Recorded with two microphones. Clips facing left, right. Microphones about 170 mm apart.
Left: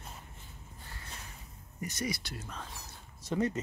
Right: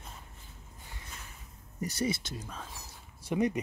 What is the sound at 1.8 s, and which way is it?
Speech, 35° right (ahead or behind).